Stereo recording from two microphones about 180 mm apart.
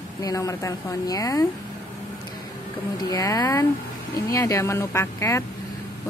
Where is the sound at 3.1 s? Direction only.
20° left (ahead or behind).